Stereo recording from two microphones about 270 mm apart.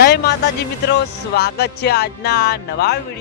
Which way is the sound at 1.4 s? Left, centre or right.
Left.